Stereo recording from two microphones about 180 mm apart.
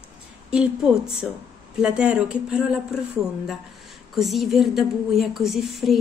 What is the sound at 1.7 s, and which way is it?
A woman's voice, 5° right (ahead or behind).